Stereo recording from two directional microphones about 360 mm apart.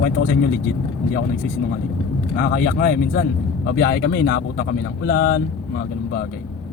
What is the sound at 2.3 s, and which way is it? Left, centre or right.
Speech, left.